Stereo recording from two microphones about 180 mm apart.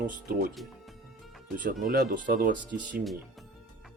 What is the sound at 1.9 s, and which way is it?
Speech, 55° right (ahead or behind).